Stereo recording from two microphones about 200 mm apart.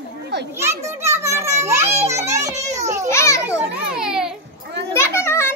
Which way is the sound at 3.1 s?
15° left (ahead or behind).